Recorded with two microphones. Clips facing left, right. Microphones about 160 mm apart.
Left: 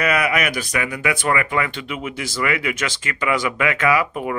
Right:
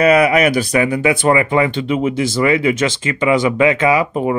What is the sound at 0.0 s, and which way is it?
Speech, 30° right (ahead or behind).